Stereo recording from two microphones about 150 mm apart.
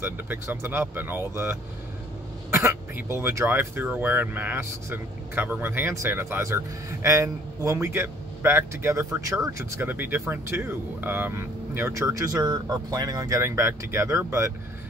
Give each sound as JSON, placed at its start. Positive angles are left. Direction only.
{"t": 0.0, "sound": "speech", "side_deg": -15}